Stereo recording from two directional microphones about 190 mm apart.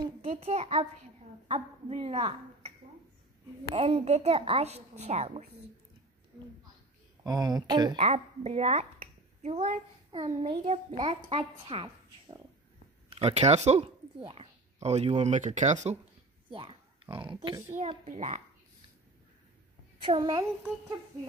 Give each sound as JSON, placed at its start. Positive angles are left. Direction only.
{"t": 0.3, "sound": "a woman's voice", "side_deg": -35}
{"t": 3.7, "sound": "a woman's voice", "side_deg": -30}
{"t": 7.2, "sound": "a woman's voice", "side_deg": -20}
{"t": 16.4, "sound": "speech", "side_deg": -25}
{"t": 17.7, "sound": "a woman's voice", "side_deg": -40}
{"t": 20.0, "sound": "a woman's voice", "side_deg": -25}